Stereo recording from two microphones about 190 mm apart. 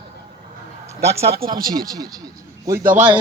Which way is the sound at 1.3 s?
50° right (ahead or behind).